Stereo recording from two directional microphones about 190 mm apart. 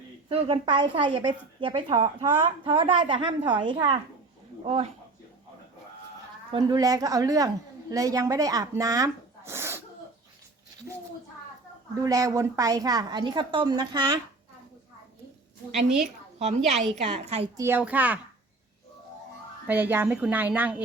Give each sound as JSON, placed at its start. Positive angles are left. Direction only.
{"t": 0.3, "sound": "a woman's voice", "side_deg": -30}
{"t": 6.5, "sound": "a woman's voice", "side_deg": -20}
{"t": 12.0, "sound": "speech", "side_deg": -20}
{"t": 17.0, "sound": "a woman's voice", "side_deg": -35}
{"t": 17.6, "sound": "a woman's voice", "side_deg": -10}
{"t": 19.6, "sound": "a woman's voice", "side_deg": -10}